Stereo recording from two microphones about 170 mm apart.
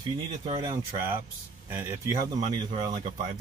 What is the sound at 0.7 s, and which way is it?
Speech, 15° right (ahead or behind).